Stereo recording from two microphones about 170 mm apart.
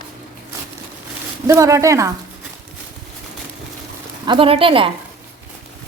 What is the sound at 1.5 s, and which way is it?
Speech, 20° right (ahead or behind).